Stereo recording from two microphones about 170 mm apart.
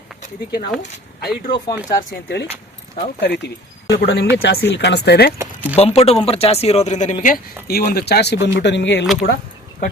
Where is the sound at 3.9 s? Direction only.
85° left.